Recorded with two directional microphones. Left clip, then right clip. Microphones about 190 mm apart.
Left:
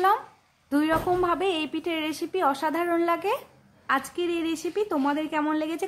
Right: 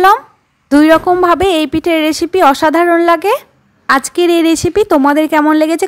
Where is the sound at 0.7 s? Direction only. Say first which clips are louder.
Right 16 dB; 40° right (ahead or behind).